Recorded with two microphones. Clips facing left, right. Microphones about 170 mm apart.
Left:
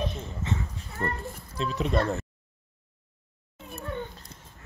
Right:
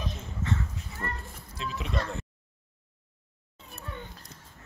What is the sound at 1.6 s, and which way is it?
Speech, 40° left (ahead or behind).